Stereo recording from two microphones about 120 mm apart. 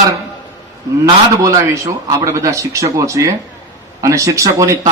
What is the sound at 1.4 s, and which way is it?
A man's voice, 30° right (ahead or behind).